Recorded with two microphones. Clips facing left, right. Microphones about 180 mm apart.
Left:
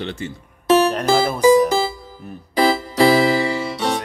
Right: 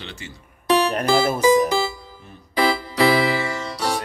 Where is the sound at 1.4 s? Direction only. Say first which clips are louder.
Left 7 dB; 40° left (ahead or behind).